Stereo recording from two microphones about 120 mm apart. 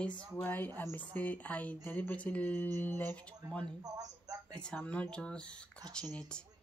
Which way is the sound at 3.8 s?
30° right (ahead or behind).